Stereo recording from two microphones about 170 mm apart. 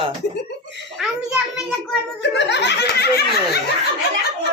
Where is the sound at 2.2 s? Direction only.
90° left; by 3.2 s 75° left (ahead or behind).